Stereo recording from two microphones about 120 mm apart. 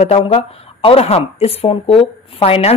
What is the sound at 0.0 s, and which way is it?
A woman's voice, 55° left (ahead or behind).